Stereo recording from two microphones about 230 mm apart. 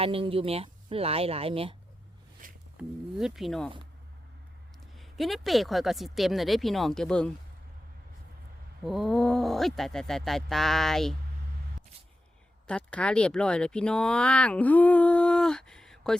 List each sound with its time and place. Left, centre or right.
0.0 s speech: right
2.4 s a sound: right
2.7 s speech: centre
4.9 s speech: centre
8.8 s speech: centre
12.6 s speech: centre